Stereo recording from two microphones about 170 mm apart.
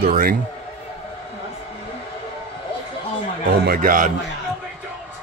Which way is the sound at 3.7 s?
55° right (ahead or behind).